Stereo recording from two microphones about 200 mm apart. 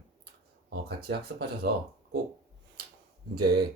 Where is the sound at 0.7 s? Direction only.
55° right (ahead or behind).